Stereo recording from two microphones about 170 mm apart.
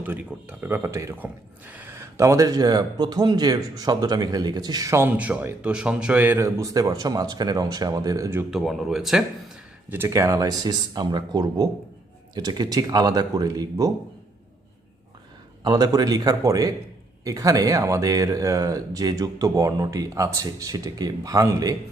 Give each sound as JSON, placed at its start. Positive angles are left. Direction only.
{"t": 0.0, "sound": "speech", "side_deg": -10}
{"t": 8.4, "sound": "speech", "side_deg": 0}
{"t": 9.9, "sound": "speech", "side_deg": -15}
{"t": 15.6, "sound": "speech", "side_deg": -25}